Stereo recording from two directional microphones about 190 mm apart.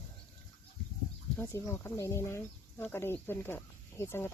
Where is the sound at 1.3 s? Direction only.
15° left (ahead or behind).